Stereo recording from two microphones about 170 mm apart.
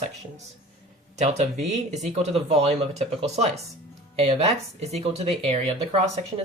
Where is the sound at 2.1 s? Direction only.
40° right (ahead or behind).